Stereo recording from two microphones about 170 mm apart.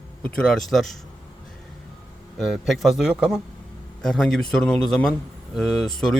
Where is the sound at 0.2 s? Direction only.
5° left (ahead or behind).